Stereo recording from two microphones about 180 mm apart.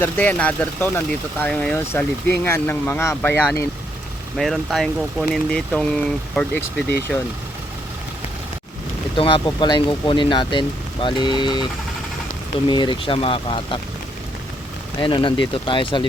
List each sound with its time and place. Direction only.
0.0 s speech: 10° left (ahead or behind)
4.4 s speech: centre (ahead or behind)
9.1 s speech: 30° left (ahead or behind)
12.6 s speech: 25° left (ahead or behind)
15.0 s speech: 25° left (ahead or behind)